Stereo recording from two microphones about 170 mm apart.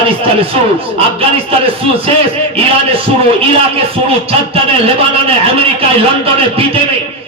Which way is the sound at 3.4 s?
35° right (ahead or behind).